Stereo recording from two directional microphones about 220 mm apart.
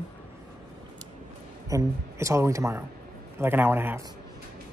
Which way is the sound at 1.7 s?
15° right (ahead or behind).